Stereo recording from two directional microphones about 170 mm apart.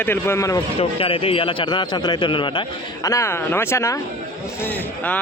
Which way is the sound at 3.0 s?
15° left (ahead or behind).